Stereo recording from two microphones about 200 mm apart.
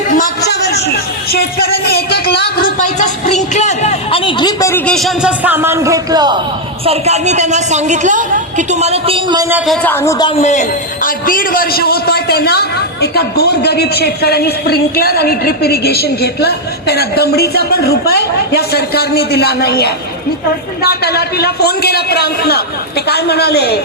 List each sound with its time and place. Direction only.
0.1 s a sound: 50° left (ahead or behind)
1.3 s speech: 50° left (ahead or behind); by 4.8 s 20° left (ahead or behind)
4.9 s a man's voice: centre (ahead or behind); by 6.3 s 20° right (ahead or behind)
6.8 s a woman's voice: 30° right (ahead or behind)
9.5 s a man's voice: 5° right (ahead or behind)
9.8 s a man's voice: 10° left (ahead or behind); by 23.8 s 55° left (ahead or behind)